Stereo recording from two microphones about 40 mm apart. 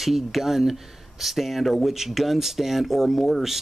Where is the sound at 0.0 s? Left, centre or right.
Centre.